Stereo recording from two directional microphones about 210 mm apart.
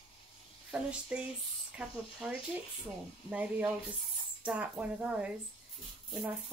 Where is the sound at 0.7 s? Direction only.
5° right (ahead or behind).